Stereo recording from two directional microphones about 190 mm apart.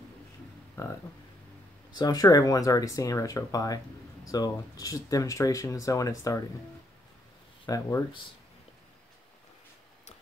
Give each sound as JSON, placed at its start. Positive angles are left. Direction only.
{"t": 0.8, "sound": "speech", "side_deg": 15}
{"t": 2.0, "sound": "speech", "side_deg": 20}
{"t": 7.6, "sound": "speech", "side_deg": 20}